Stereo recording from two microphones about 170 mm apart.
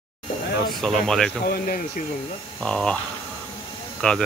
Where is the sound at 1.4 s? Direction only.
60° left (ahead or behind).